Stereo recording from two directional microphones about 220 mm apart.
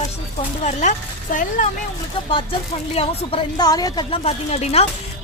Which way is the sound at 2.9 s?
25° left (ahead or behind).